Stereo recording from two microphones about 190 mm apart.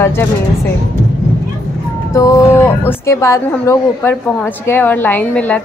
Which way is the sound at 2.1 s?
15° left (ahead or behind).